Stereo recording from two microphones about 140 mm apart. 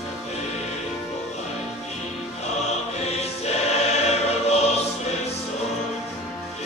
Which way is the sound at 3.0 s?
50° left (ahead or behind).